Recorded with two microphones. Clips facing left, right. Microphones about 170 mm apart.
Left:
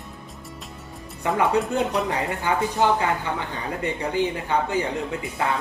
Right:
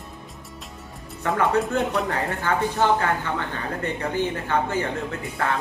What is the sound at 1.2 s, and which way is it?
Speech, 15° left (ahead or behind).